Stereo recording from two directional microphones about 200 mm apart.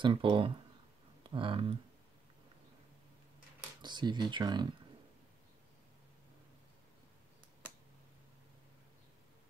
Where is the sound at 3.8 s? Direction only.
20° right (ahead or behind).